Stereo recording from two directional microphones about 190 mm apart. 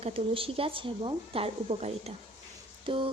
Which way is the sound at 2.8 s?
25° right (ahead or behind).